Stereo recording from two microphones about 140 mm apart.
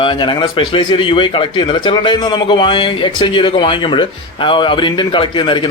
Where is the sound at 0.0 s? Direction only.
35° left (ahead or behind).